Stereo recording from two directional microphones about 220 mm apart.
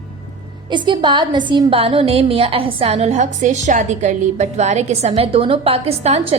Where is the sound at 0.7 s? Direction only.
20° right (ahead or behind).